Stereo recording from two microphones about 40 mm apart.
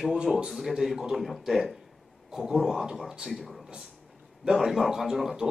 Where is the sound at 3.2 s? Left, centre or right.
Centre.